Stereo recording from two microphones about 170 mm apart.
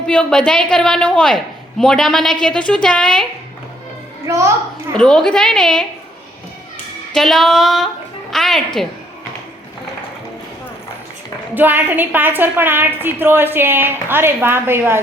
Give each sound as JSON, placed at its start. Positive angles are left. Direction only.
{"t": 0.1, "sound": "a woman's voice", "side_deg": 5}
{"t": 4.3, "sound": "a woman's voice", "side_deg": -15}
{"t": 4.9, "sound": "a woman's voice", "side_deg": 5}
{"t": 7.1, "sound": "a woman's voice", "side_deg": 0}
{"t": 11.5, "sound": "a woman's voice", "side_deg": -10}